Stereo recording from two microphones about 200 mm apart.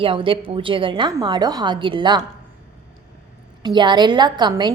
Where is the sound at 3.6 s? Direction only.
20° right (ahead or behind).